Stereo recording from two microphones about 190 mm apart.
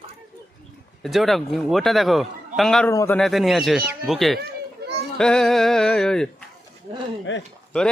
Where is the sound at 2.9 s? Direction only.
15° left (ahead or behind).